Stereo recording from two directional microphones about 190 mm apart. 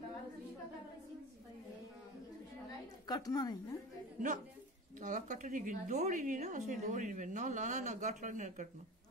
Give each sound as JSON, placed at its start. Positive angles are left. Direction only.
{"t": 3.1, "sound": "a woman's voice", "side_deg": 20}
{"t": 5.0, "sound": "a woman's voice", "side_deg": -40}